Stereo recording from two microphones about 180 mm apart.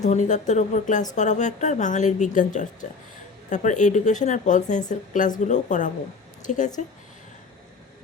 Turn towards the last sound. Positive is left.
turn(degrees=45)  # may be behind; listen again after turning